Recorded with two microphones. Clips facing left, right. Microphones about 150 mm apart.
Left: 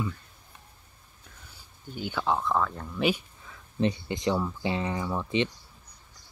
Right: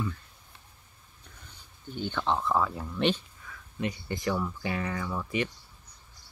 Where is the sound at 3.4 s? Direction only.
25° left (ahead or behind).